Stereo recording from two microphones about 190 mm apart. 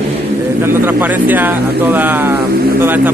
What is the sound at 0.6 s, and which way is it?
Speech, 10° right (ahead or behind).